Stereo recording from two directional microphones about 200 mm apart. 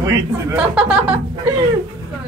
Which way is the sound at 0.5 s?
5° right (ahead or behind).